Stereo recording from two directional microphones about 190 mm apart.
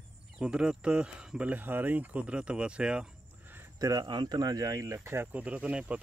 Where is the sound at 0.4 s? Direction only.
5° right (ahead or behind).